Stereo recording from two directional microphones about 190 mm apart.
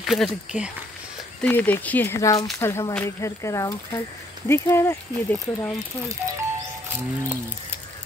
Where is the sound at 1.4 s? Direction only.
10° left (ahead or behind).